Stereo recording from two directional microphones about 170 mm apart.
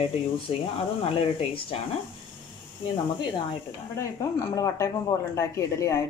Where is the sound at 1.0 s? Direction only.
35° left (ahead or behind).